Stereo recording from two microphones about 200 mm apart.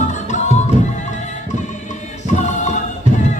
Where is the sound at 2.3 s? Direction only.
35° left (ahead or behind).